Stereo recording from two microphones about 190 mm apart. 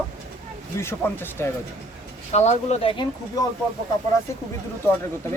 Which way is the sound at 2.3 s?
35° left (ahead or behind).